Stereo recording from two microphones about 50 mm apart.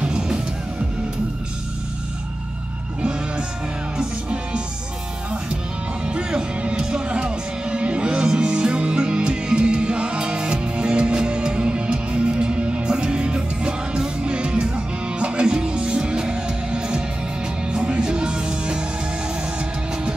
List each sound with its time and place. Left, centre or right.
0.0 s music: centre
3.0 s music: centre
6.0 s music: centre